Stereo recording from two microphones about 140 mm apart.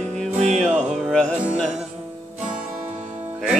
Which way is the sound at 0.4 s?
60° right (ahead or behind).